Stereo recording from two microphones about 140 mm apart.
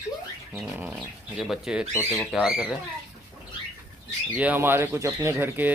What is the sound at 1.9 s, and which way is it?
Speech, 20° left (ahead or behind).